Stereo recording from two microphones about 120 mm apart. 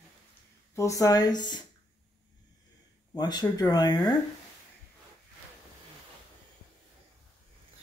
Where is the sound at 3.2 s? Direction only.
35° left (ahead or behind).